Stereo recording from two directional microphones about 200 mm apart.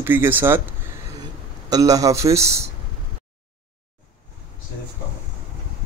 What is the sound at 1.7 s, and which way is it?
Speech, 15° right (ahead or behind).